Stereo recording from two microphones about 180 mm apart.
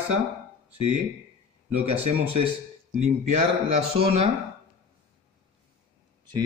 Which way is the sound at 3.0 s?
35° right (ahead or behind).